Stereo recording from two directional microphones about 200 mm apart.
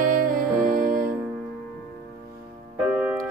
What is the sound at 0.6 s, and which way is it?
Music, 45° right (ahead or behind).